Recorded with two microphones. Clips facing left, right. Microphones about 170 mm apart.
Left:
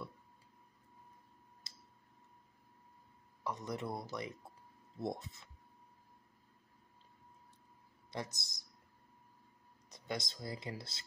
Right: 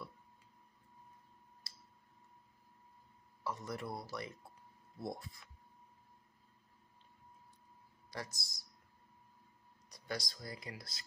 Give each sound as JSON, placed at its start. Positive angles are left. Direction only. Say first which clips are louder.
{"t": 1.6, "sound": "tick-tock", "louder": "left 1 dB", "side_deg": 20}
{"t": 3.4, "sound": "speech", "louder": "left 2 dB", "side_deg": 20}
{"t": 8.1, "sound": "speech", "louder": "left 3 dB", "side_deg": 20}
{"t": 9.8, "sound": "speech", "louder": "left 1 dB", "side_deg": 20}